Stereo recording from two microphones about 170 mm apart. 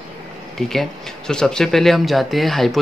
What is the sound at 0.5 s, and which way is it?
Speech, centre (ahead or behind).